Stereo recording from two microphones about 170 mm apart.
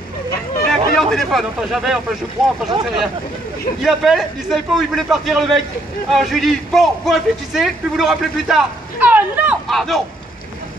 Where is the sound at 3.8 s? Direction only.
Centre (ahead or behind).